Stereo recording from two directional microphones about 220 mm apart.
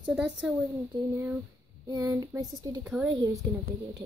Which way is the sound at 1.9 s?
15° right (ahead or behind).